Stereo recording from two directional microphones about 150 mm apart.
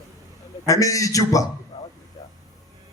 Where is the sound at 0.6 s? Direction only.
20° left (ahead or behind).